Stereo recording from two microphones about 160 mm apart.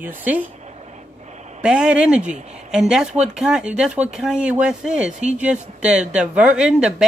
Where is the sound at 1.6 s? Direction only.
5° right (ahead or behind).